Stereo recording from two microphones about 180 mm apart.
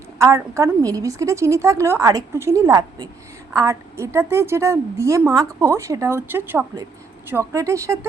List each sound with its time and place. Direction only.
0.2 s a woman's voice: 15° right (ahead or behind)